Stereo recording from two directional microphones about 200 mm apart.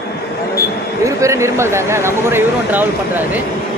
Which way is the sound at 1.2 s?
15° right (ahead or behind).